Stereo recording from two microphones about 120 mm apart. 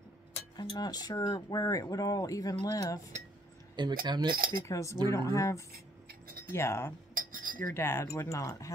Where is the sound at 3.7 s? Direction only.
40° right (ahead or behind).